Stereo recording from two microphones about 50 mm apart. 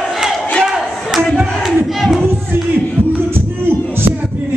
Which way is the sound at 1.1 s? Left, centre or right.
Centre.